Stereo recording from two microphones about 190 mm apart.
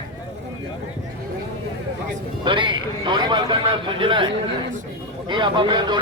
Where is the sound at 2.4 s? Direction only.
25° right (ahead or behind).